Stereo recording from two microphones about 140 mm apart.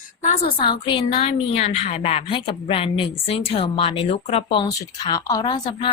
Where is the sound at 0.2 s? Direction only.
60° left (ahead or behind).